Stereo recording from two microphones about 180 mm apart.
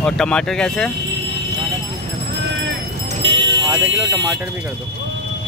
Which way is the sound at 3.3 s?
90° right.